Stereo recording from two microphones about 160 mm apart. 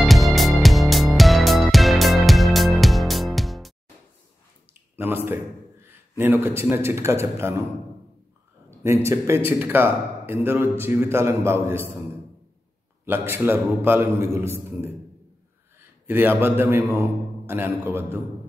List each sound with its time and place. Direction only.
0.0 s music: centre (ahead or behind)
4.9 s a sound: 15° right (ahead or behind)
6.1 s a man's voice: 15° right (ahead or behind)
8.8 s a man's voice: 15° right (ahead or behind)
13.0 s a man's voice: 15° right (ahead or behind)
16.1 s a man's voice: 15° right (ahead or behind)